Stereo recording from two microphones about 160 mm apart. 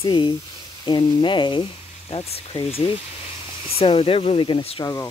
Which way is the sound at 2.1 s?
35° left (ahead or behind).